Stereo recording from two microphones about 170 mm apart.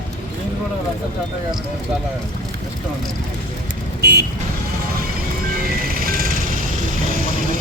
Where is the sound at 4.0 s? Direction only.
75° right (ahead or behind).